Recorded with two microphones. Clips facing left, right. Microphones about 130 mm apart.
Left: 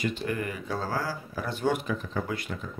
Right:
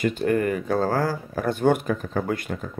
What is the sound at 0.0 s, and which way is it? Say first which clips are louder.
Speech: right 8 dB; 50° right (ahead or behind).